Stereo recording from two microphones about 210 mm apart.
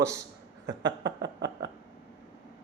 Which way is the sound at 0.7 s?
55° right (ahead or behind).